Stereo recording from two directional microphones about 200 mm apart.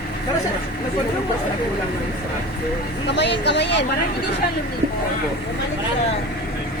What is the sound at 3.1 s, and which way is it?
Speech, 60° left (ahead or behind).